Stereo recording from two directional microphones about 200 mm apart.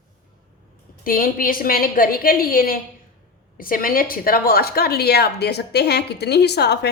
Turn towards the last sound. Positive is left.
turn(degrees=55)  # may be behind; listen again after turning